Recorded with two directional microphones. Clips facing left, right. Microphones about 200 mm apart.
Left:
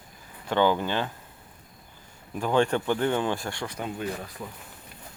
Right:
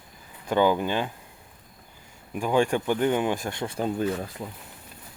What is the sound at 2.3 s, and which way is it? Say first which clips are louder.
Speech: right 1 dB; 10° right (ahead or behind).